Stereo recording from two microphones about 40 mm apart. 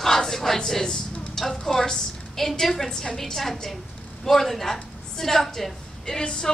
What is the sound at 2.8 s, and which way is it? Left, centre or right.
A woman's voice, centre.